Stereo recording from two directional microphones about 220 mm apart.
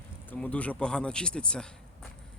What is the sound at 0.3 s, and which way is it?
Speech, 5° left (ahead or behind).